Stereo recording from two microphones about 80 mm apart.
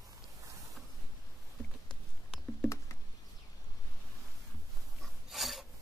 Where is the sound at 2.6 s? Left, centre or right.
Left.